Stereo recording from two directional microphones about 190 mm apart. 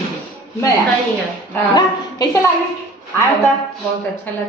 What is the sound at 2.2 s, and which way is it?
Speech, 20° left (ahead or behind).